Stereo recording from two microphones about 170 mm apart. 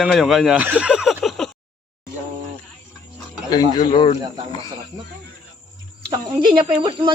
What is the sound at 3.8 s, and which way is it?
Speech, 30° left (ahead or behind).